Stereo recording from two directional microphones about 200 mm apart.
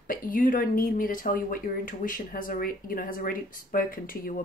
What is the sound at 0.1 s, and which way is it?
Speech, 40° left (ahead or behind).